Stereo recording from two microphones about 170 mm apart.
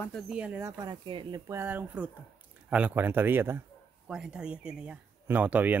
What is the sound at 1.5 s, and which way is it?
Speech, 10° right (ahead or behind).